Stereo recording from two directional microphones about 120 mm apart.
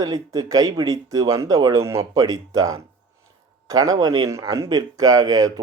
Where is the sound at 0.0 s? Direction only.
30° right (ahead or behind).